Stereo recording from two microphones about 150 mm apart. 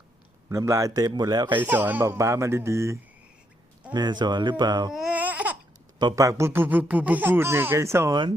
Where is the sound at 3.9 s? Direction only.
30° right (ahead or behind).